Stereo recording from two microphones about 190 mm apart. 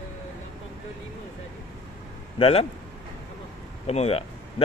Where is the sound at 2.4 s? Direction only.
30° left (ahead or behind).